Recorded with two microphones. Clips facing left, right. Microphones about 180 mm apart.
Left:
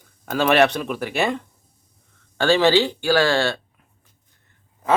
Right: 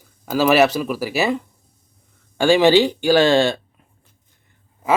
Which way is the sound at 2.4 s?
15° right (ahead or behind).